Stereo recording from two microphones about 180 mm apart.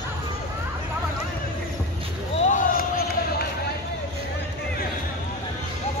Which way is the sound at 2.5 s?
50° left (ahead or behind).